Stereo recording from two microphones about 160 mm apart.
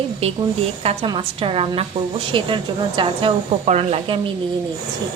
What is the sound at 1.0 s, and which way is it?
A woman's voice, 35° right (ahead or behind).